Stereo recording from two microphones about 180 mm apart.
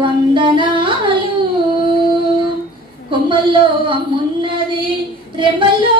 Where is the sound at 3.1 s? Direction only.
25° right (ahead or behind).